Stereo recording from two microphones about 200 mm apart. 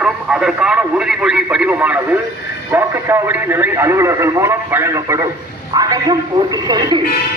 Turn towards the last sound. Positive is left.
turn(degrees=-20)  # may be behind; listen again after turning